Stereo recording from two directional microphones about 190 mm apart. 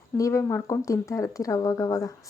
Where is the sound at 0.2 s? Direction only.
15° left (ahead or behind).